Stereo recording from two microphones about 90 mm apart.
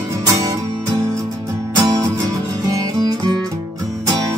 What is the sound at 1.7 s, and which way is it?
Music, 45° right (ahead or behind).